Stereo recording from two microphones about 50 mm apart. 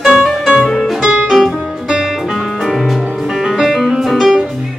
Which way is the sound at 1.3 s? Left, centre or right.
Centre.